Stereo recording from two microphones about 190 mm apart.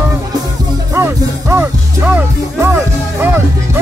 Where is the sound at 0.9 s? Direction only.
15° right (ahead or behind).